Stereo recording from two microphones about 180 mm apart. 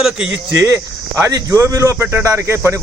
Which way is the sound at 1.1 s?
15° right (ahead or behind).